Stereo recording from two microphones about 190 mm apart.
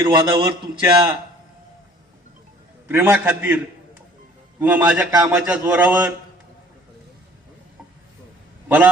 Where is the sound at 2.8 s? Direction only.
10° right (ahead or behind).